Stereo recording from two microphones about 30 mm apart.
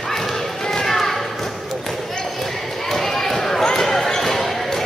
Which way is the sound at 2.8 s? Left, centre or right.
Centre.